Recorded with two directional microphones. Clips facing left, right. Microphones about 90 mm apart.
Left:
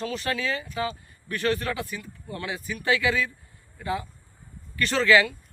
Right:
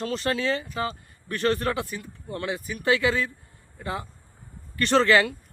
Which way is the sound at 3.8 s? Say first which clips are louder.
Left 2 dB; 40° right (ahead or behind).